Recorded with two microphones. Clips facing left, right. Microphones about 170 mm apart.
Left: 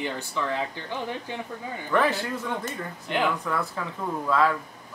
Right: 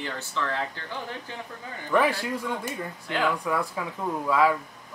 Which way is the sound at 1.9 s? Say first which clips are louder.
Right 1 dB; 10° right (ahead or behind).